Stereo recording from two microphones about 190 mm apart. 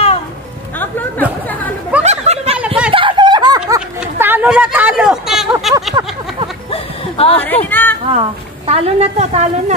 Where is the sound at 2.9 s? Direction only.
25° right (ahead or behind).